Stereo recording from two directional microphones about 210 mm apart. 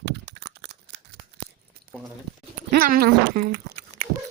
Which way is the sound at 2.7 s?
45° right (ahead or behind).